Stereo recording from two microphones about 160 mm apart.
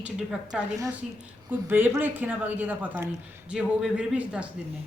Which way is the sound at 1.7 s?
10° right (ahead or behind).